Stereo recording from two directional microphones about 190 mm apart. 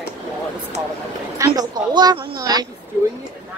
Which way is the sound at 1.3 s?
20° right (ahead or behind).